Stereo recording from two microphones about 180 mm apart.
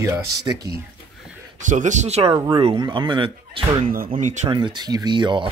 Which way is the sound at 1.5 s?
45° right (ahead or behind).